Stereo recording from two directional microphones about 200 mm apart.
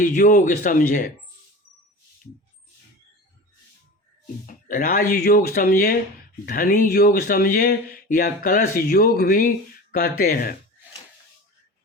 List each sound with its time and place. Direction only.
0.0 s speech: 40° left (ahead or behind)
4.4 s speech: 45° left (ahead or behind)